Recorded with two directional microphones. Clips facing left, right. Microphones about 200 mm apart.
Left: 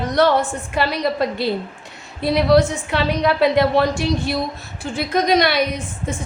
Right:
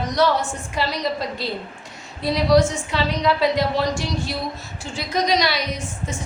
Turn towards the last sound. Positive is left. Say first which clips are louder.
# left 3 dB
turn(degrees=55)  # may be behind; listen again after turning